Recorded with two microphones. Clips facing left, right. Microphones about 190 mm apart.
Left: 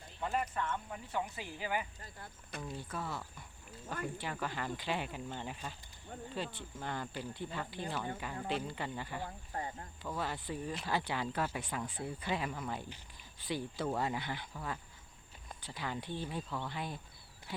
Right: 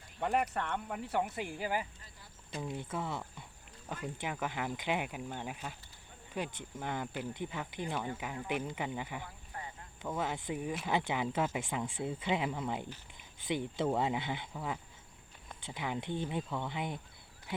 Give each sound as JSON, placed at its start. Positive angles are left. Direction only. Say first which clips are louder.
{"t": 0.2, "sound": "speech", "louder": "right 4 dB", "side_deg": -65}
{"t": 1.5, "sound": "speech", "louder": "right 1 dB", "side_deg": -40}
{"t": 2.0, "sound": "speech", "louder": "left 6 dB", "side_deg": 55}
{"t": 2.6, "sound": "speech", "louder": "right 4 dB", "side_deg": -20}
{"t": 9.5, "sound": "cricket", "louder": "left 5 dB", "side_deg": 40}
{"t": 10.0, "sound": "speech", "louder": "right 3 dB", "side_deg": -20}